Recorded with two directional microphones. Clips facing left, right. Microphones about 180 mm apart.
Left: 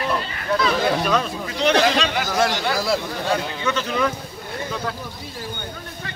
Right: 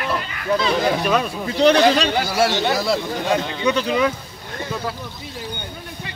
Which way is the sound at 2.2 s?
10° right (ahead or behind).